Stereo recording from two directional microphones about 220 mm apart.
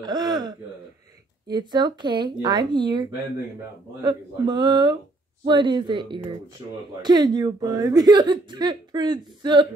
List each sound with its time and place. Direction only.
0.0 s speech: 20° right (ahead or behind)